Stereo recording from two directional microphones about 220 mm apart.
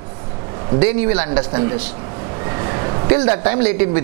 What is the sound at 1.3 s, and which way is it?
A man's voice, 20° right (ahead or behind).